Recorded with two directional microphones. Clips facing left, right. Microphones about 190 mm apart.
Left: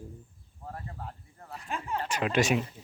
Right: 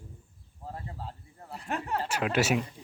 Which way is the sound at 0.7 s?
25° right (ahead or behind).